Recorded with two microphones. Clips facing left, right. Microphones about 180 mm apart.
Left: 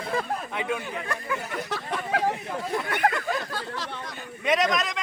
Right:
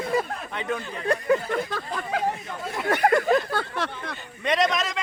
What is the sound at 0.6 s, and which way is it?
Speech, 10° left (ahead or behind).